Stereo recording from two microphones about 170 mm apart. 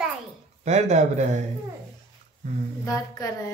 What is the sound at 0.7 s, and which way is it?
Speech, 45° right (ahead or behind).